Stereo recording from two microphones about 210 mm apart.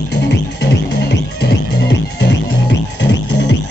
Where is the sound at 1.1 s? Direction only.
50° left (ahead or behind).